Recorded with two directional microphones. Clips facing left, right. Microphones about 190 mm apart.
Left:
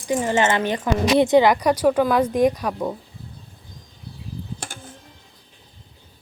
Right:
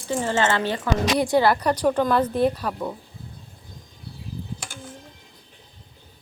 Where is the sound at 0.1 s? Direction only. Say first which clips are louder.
Left 3 dB; 10° left (ahead or behind).